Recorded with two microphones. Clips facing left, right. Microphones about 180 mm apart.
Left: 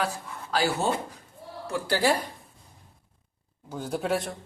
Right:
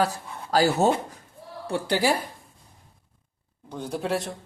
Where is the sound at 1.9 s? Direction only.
10° right (ahead or behind).